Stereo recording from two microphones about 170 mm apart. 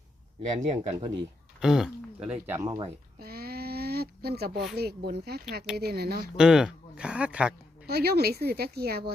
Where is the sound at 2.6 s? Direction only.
25° right (ahead or behind).